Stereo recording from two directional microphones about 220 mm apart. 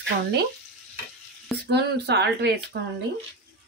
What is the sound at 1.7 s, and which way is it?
Speech, 50° right (ahead or behind).